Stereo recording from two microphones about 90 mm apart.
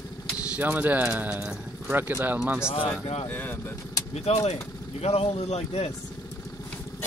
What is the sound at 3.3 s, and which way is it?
Speech, 20° left (ahead or behind).